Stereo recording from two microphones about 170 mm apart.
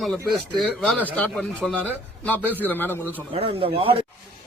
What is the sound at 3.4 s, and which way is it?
Speech, 35° right (ahead or behind).